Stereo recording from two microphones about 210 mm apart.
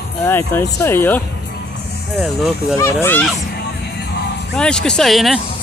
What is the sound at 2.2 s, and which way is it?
Speech, 5° right (ahead or behind).